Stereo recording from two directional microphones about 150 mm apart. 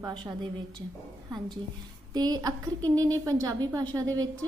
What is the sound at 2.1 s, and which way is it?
A woman's voice, 25° right (ahead or behind).